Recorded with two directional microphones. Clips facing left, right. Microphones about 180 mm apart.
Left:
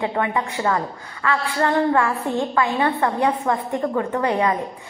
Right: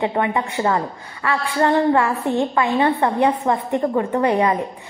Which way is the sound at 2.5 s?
20° right (ahead or behind).